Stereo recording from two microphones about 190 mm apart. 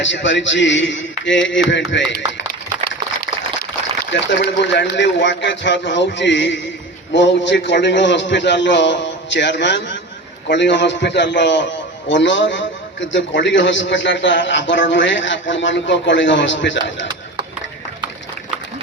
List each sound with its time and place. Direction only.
0.0 s a man's voice: 75° left (ahead or behind)
4.0 s a man's voice: 65° left (ahead or behind)